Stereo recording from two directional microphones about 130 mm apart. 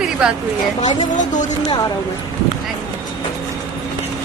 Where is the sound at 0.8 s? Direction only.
70° left (ahead or behind).